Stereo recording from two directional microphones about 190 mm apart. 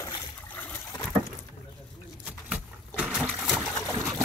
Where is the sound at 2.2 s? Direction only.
5° right (ahead or behind).